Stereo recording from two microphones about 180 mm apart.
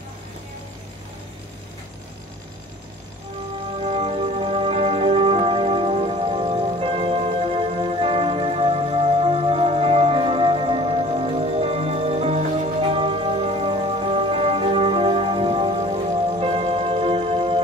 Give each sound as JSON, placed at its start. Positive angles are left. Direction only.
{"t": 3.8, "sound": "music", "side_deg": -35}